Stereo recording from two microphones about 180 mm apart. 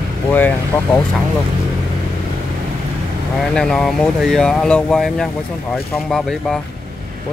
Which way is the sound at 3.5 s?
5° left (ahead or behind).